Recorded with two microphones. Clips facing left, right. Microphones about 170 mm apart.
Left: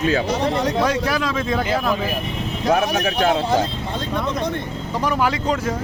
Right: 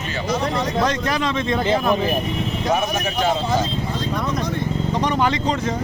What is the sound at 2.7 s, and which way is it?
Speech, 65° left (ahead or behind).